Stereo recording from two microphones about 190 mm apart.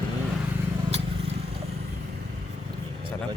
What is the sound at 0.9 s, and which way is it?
Vehicle, 35° right (ahead or behind).